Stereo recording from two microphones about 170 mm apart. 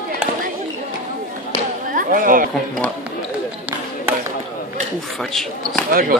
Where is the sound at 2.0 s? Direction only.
55° right (ahead or behind).